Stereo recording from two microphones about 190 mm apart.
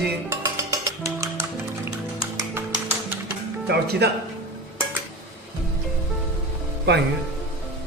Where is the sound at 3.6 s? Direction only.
60° right (ahead or behind).